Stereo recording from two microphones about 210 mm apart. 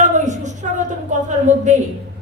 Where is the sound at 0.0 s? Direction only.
35° right (ahead or behind).